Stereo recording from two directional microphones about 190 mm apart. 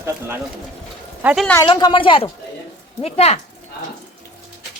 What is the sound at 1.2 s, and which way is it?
Speech, 5° right (ahead or behind).